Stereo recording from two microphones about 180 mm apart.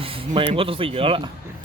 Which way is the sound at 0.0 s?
30° right (ahead or behind).